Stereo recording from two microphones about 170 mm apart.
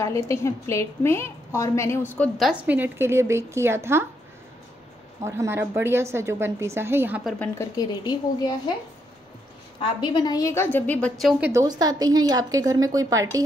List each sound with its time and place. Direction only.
0.0 s a woman's voice: 15° left (ahead or behind); by 4.0 s 15° right (ahead or behind)
5.2 s speech: 15° right (ahead or behind)
7.3 s a woman's voice: 20° left (ahead or behind)
9.8 s a woman's voice: 30° left (ahead or behind); by 11.5 s 5° right (ahead or behind)
11.5 s a woman's voice: 20° right (ahead or behind)